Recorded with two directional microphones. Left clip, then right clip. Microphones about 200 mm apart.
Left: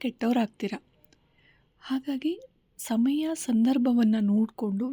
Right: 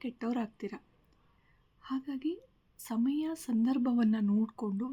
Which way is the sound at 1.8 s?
35° left (ahead or behind).